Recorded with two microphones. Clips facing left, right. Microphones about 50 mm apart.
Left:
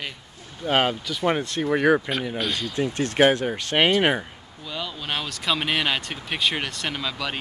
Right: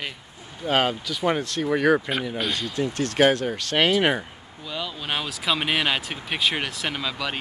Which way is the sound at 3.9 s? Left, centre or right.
Centre.